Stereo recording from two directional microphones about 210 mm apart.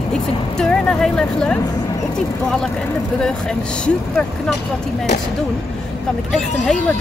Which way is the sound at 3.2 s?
5° left (ahead or behind).